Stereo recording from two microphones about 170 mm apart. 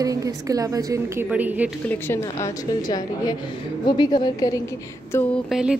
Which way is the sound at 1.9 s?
15° left (ahead or behind).